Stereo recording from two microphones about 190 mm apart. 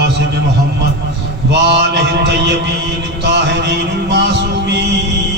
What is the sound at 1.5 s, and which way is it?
Mantra, 65° right (ahead or behind).